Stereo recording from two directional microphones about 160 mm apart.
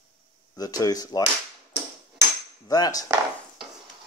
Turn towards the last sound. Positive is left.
turn(degrees=25)  # may be behind; listen again after turning